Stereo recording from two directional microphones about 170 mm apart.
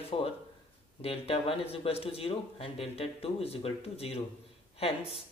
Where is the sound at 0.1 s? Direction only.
30° left (ahead or behind).